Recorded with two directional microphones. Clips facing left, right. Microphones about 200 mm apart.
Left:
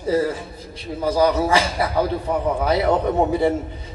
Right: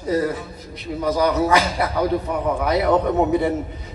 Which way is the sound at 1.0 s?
30° left (ahead or behind).